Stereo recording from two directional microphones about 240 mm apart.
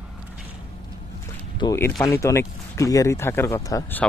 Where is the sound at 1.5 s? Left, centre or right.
Centre.